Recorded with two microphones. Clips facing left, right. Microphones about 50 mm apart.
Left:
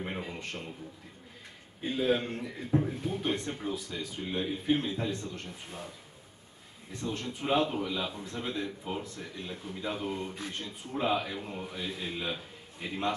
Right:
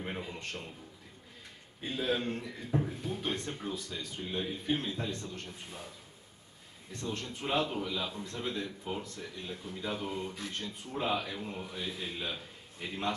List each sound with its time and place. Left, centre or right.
0.3 s a man's voice: centre
1.8 s a man's voice: centre
7.0 s a man's voice: centre
7.2 s a man's voice: left